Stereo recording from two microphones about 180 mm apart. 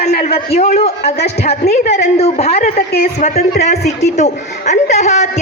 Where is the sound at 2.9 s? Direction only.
50° left (ahead or behind).